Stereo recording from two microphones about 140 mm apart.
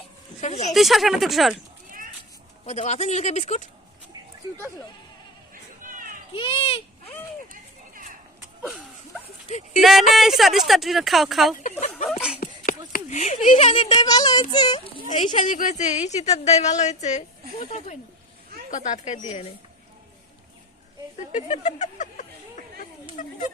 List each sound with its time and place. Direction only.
0.4 s a woman's voice: 55° left (ahead or behind)
0.7 s speech: centre (ahead or behind)
2.6 s a woman's voice: 55° left (ahead or behind)
6.3 s a child's voice: 40° left (ahead or behind)
9.5 s speech: 50° left (ahead or behind)
9.8 s speech: centre (ahead or behind)
12.6 s speech: 70° left (ahead or behind); by 13.7 s 55° left (ahead or behind)
13.7 s a child's voice: 30° left (ahead or behind)
15.2 s a woman's voice: 60° left (ahead or behind)
21.2 s speech: 55° left (ahead or behind)